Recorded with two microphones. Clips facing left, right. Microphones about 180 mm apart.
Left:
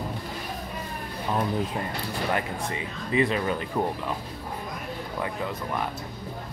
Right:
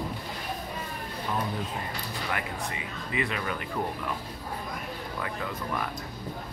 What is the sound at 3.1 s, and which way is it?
Speech, 30° left (ahead or behind).